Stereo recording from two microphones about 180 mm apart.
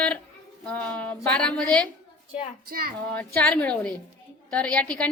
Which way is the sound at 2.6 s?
55° right (ahead or behind).